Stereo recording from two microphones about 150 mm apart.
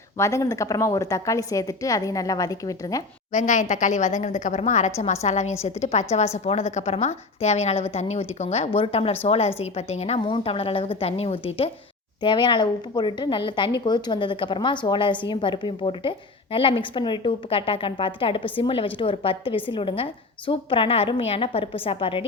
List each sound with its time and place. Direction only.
0.2 s a woman's voice: 20° left (ahead or behind)
3.3 s a woman's voice: 55° left (ahead or behind); by 22.2 s 40° left (ahead or behind)